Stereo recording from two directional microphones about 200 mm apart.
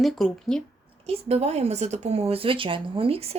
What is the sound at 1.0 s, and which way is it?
Speech, 30° right (ahead or behind).